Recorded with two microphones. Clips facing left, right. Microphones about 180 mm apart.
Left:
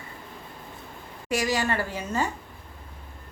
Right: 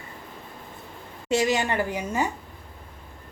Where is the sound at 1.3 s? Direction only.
25° right (ahead or behind).